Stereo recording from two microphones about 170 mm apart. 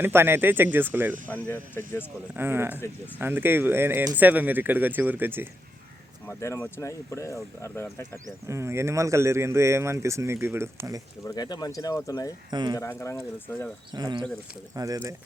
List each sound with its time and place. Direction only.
0.0 s speech: 15° right (ahead or behind)
1.5 s speech: 15° left (ahead or behind)
2.3 s speech: 15° right (ahead or behind)
6.2 s speech: 15° left (ahead or behind)
8.4 s speech: 15° right (ahead or behind)
11.3 s speech: 25° left (ahead or behind)
12.5 s speech: 25° right (ahead or behind)
12.7 s speech: 15° left (ahead or behind)
13.9 s speech: 25° right (ahead or behind)